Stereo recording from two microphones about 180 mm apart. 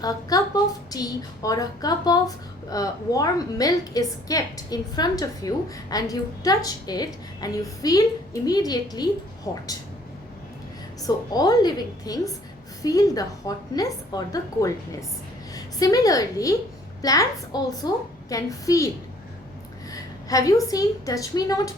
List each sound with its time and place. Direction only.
0.0 s a woman's voice: 20° left (ahead or behind)
11.0 s a woman's voice: 20° left (ahead or behind)
19.9 s a woman's voice: 20° left (ahead or behind)